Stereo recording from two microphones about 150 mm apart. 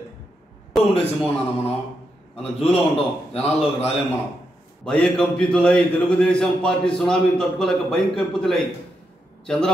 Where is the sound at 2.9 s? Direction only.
40° left (ahead or behind).